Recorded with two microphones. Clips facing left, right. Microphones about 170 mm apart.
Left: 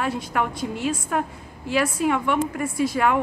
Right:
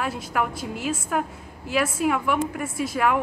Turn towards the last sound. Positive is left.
turn(degrees=0)  # may be behind; listen again after turning